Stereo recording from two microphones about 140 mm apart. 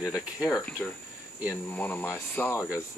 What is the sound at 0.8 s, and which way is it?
Speech, 10° left (ahead or behind).